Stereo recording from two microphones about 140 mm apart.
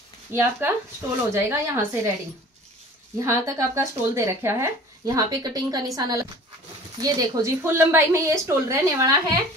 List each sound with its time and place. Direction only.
0.3 s a woman's voice: 15° right (ahead or behind)
3.2 s speech: 20° right (ahead or behind)